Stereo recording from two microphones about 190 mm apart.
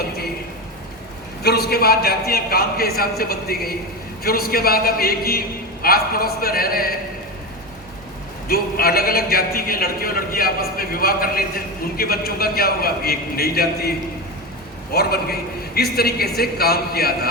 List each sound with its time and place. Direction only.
1.4 s a man's voice: 60° left (ahead or behind)
8.4 s a man's voice: 50° left (ahead or behind)
14.9 s a man's voice: 55° left (ahead or behind)